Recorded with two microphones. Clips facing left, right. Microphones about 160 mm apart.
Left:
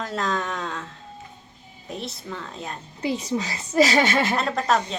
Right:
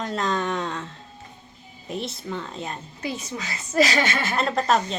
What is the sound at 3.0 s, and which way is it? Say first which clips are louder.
A woman's voice: left 8 dB; 30° left (ahead or behind).